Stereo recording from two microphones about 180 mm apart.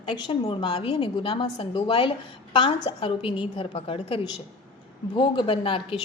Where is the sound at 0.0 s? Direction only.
25° left (ahead or behind).